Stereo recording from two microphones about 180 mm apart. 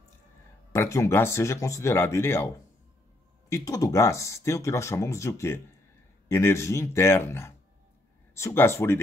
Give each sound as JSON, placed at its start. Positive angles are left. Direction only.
{"t": 0.7, "sound": "speech", "side_deg": 15}